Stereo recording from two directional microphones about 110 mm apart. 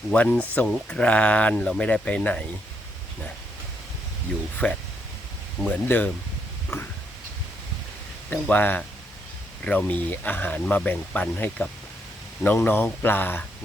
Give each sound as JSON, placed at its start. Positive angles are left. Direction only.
{"t": 0.1, "sound": "speech", "side_deg": 10}
{"t": 4.5, "sound": "speech", "side_deg": 10}
{"t": 8.3, "sound": "speech", "side_deg": 15}